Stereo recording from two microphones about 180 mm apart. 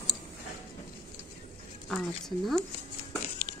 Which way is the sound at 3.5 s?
35° left (ahead or behind).